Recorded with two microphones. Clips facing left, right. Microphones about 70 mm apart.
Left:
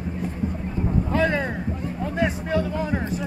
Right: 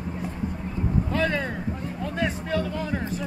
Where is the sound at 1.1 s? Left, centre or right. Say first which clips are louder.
Left 5 dB; left.